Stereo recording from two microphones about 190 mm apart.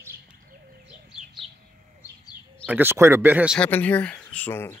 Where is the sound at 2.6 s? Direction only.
10° right (ahead or behind).